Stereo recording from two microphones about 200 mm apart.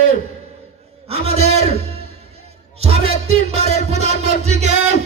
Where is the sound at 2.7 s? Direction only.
30° right (ahead or behind).